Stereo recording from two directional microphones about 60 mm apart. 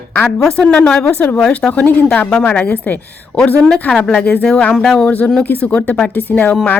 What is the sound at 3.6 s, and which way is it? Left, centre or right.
Speech, centre.